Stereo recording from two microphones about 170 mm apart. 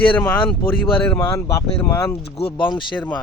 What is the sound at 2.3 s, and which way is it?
Speech, 30° left (ahead or behind).